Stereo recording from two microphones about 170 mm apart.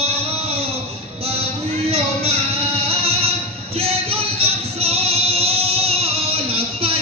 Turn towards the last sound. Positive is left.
turn(degrees=-35)  # may be behind; listen again after turning